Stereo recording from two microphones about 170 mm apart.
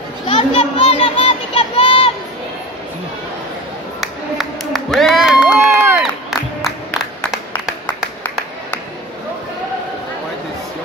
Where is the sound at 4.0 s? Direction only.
Centre (ahead or behind).